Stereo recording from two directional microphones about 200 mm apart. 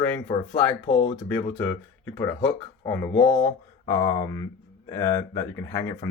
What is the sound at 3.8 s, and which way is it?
Speech, 20° left (ahead or behind).